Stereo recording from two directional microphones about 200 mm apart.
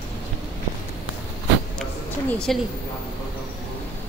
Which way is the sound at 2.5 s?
Centre (ahead or behind).